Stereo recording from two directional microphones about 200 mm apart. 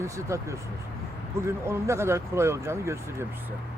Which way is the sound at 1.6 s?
15° right (ahead or behind).